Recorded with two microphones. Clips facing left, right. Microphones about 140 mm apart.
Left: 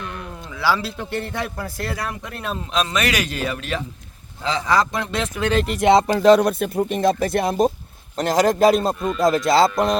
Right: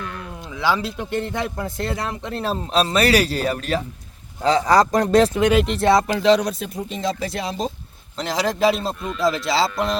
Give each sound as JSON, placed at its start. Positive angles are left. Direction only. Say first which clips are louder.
{"t": 0.6, "sound": "a man's voice", "louder": "even", "side_deg": -20}
{"t": 5.3, "sound": "speech", "louder": "right 4 dB", "side_deg": -15}
{"t": 5.7, "sound": "speech", "louder": "left 2 dB", "side_deg": 20}
{"t": 6.1, "sound": "speech", "louder": "left 3 dB", "side_deg": 50}